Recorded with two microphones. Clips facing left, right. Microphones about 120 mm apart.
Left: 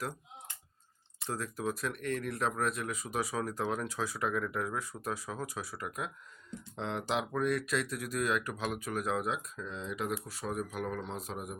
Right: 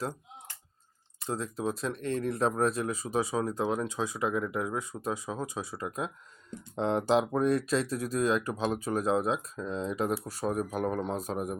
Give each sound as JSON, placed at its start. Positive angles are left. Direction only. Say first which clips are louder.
{"t": 1.3, "sound": "speech", "louder": "right 3 dB", "side_deg": -25}
{"t": 6.7, "sound": "speech", "louder": "right 8 dB", "side_deg": -35}